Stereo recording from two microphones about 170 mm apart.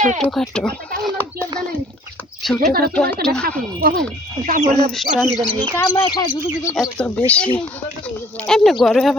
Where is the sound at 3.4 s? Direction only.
60° right (ahead or behind).